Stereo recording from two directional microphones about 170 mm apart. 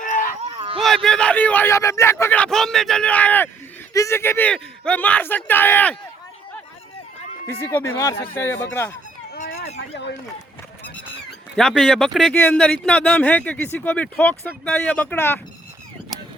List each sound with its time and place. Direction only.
0.0 s a sound: 50° left (ahead or behind)
0.5 s a sound: 30° right (ahead or behind)
0.8 s a man's voice: centre (ahead or behind)
7.6 s a man's voice: 15° left (ahead or behind)
9.7 s speech: 90° left
11.5 s a man's voice: centre (ahead or behind)